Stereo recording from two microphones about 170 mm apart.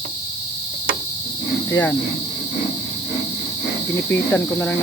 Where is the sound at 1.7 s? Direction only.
10° left (ahead or behind).